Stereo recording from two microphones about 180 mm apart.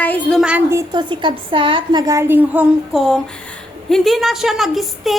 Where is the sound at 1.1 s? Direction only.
25° right (ahead or behind).